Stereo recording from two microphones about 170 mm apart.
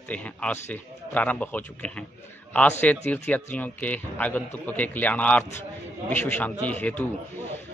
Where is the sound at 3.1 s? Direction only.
10° left (ahead or behind).